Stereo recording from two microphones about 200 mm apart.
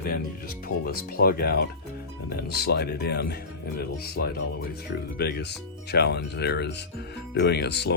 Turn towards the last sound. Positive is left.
turn(degrees=55)  # may be behind; listen again after turning